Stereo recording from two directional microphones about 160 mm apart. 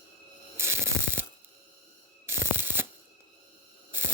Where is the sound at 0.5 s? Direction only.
15° right (ahead or behind).